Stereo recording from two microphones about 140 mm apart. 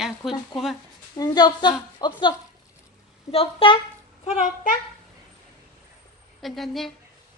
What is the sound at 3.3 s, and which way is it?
Speech, 40° left (ahead or behind).